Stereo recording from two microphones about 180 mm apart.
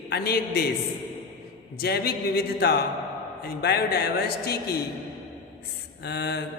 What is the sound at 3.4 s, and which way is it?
Speech, 60° left (ahead or behind).